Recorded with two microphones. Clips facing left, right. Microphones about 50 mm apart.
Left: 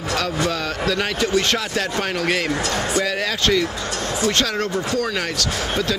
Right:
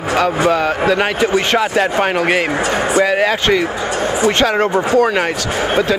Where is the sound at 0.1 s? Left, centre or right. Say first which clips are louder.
Right 9 dB; right.